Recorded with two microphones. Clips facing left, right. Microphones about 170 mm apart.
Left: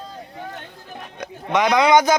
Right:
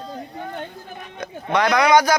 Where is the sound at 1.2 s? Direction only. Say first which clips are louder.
Even; 15° left (ahead or behind).